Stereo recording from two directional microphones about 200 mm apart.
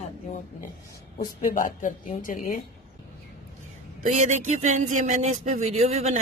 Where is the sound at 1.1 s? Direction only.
40° left (ahead or behind).